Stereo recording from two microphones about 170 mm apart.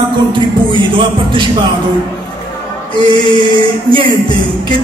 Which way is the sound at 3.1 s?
30° right (ahead or behind).